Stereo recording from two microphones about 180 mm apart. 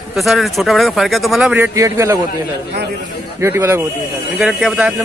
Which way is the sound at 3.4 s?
15° right (ahead or behind).